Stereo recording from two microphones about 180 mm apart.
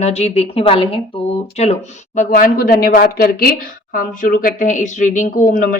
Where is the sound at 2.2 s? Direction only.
50° left (ahead or behind).